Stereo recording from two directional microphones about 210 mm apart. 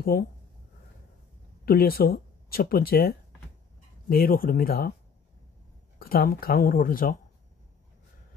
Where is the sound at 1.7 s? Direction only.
45° left (ahead or behind).